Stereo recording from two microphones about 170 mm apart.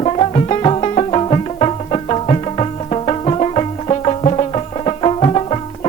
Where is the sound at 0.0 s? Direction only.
35° left (ahead or behind).